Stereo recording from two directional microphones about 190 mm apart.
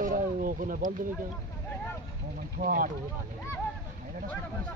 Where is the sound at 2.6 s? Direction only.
50° right (ahead or behind).